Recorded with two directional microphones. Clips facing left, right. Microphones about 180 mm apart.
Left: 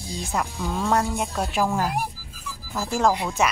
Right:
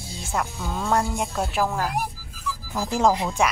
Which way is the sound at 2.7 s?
20° right (ahead or behind).